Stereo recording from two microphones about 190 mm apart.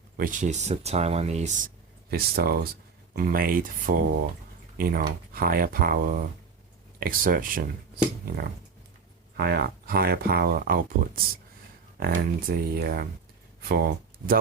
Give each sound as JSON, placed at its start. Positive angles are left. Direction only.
{"t": 0.2, "sound": "speech", "side_deg": -45}
{"t": 2.0, "sound": "speech", "side_deg": -55}